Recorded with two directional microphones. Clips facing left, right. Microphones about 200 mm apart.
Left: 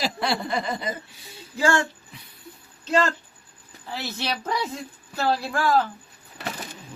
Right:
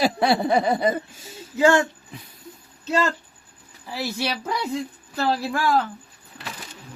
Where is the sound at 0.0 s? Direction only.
60° right (ahead or behind).